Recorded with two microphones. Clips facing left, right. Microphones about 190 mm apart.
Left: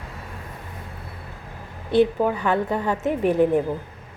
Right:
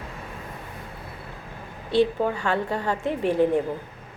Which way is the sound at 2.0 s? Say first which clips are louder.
Left 3 dB; 20° left (ahead or behind).